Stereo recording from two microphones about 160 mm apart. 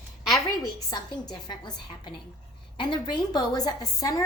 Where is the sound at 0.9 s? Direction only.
25° left (ahead or behind).